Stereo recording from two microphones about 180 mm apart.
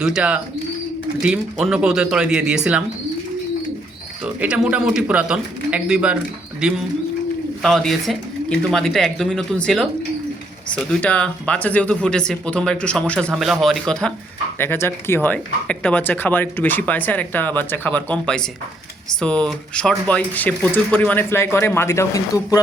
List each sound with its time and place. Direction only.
0.0 s speech: 5° right (ahead or behind)
4.2 s speech: 10° right (ahead or behind); by 22.6 s 20° left (ahead or behind)